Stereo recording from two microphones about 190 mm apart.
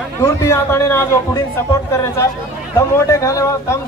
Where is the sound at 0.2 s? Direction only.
15° left (ahead or behind).